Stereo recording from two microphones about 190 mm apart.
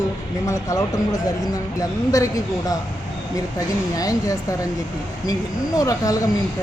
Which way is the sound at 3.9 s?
20° left (ahead or behind).